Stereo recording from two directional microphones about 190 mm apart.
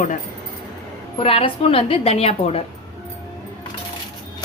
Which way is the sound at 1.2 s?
30° left (ahead or behind).